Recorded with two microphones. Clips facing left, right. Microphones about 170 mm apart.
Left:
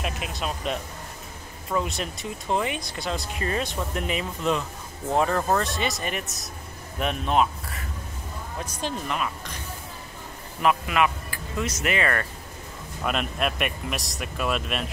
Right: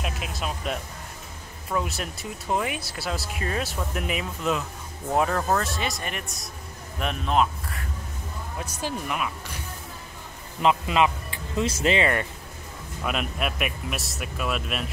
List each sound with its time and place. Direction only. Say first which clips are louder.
0.0 s music: left 1 dB; centre (ahead or behind)
1.7 s speech: left 1 dB; centre (ahead or behind)
10.6 s speech: right 1 dB; 25° right (ahead or behind)
13.0 s speech: left 2 dB; 5° right (ahead or behind)